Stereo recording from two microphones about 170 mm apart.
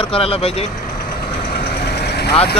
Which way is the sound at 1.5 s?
70° left (ahead or behind).